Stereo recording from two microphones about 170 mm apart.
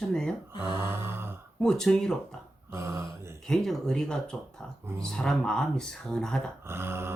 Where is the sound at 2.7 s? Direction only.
15° right (ahead or behind).